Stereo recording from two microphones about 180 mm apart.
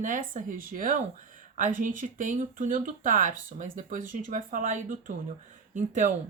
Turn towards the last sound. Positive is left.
turn(degrees=-45)  # may be behind; listen again after turning